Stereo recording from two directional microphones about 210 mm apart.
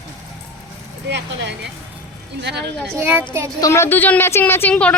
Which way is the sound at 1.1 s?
55° right (ahead or behind).